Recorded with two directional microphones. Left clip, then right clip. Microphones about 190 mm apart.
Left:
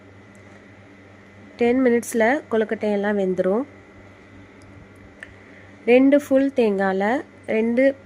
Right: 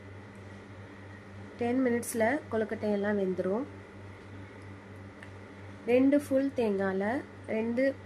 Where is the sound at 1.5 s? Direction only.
40° left (ahead or behind).